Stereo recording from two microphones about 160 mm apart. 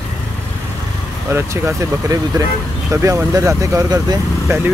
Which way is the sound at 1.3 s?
20° right (ahead or behind).